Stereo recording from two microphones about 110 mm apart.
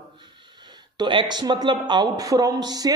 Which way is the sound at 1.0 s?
45° right (ahead or behind).